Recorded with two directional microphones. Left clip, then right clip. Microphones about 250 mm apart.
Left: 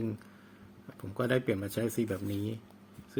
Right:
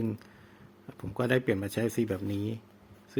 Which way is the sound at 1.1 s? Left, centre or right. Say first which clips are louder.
Right 2 dB; centre.